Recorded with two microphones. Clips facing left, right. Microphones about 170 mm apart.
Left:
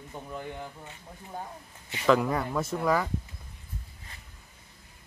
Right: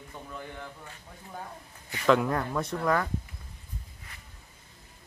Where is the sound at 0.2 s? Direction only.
15° left (ahead or behind).